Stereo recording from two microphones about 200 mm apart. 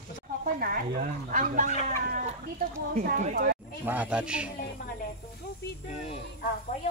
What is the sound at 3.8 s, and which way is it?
Speech, 5° right (ahead or behind).